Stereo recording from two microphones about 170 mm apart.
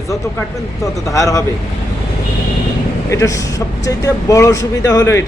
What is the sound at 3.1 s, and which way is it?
Speech, 20° left (ahead or behind).